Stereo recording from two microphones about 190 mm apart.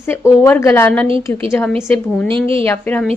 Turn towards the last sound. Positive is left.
turn(degrees=10)  # may be behind; listen again after turning